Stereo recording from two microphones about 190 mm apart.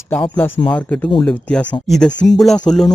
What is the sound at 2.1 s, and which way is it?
Speech, 70° left (ahead or behind).